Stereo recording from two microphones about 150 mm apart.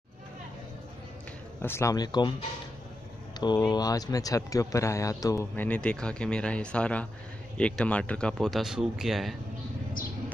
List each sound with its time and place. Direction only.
1.6 s speech: 15° left (ahead or behind)
3.3 s speech: 30° left (ahead or behind); by 9.4 s centre (ahead or behind)